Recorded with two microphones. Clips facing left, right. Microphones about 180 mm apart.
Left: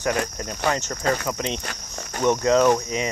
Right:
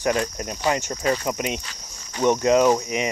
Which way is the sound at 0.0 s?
20° right (ahead or behind).